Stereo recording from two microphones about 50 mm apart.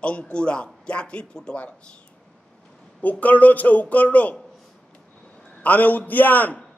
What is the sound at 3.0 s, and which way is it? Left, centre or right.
Speech, left.